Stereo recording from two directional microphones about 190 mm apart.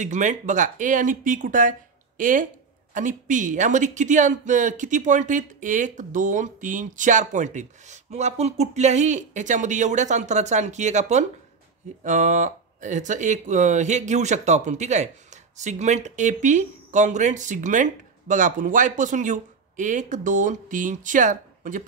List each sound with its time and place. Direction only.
0.0 s speech: 40° right (ahead or behind)